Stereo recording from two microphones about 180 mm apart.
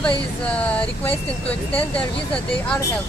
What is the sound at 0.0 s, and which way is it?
Speech, 5° left (ahead or behind).